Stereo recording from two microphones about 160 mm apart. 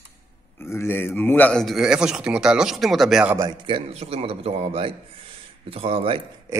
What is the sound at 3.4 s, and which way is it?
A man's voice, 30° right (ahead or behind).